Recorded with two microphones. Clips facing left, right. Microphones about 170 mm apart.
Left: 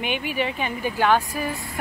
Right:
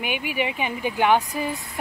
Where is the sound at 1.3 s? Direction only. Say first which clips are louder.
Right 1 dB; 20° right (ahead or behind).